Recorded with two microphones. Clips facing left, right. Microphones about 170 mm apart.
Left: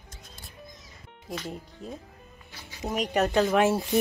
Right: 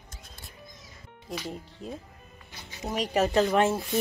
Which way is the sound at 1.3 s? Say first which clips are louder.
Even; centre (ahead or behind).